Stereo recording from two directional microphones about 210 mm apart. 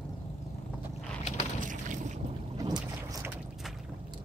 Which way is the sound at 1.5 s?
35° right (ahead or behind).